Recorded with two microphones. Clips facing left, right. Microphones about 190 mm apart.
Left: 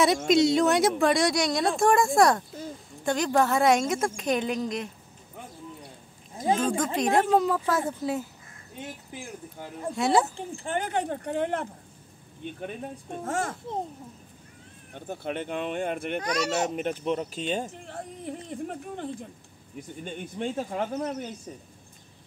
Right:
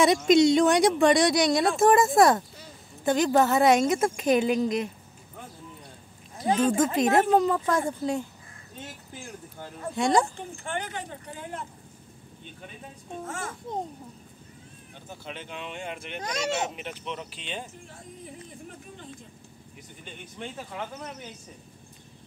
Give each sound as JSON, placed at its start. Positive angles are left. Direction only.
{"t": 0.3, "sound": "speech", "side_deg": 0}
{"t": 6.7, "sound": "speech", "side_deg": -5}
{"t": 9.9, "sound": "speech", "side_deg": 5}
{"t": 10.3, "sound": "speech", "side_deg": 35}
{"t": 10.8, "sound": "speech", "side_deg": 55}
{"t": 12.5, "sound": "speech", "side_deg": 55}
{"t": 15.0, "sound": "speech", "side_deg": 55}
{"t": 17.8, "sound": "a sound", "side_deg": 65}
{"t": 20.1, "sound": "speech", "side_deg": 40}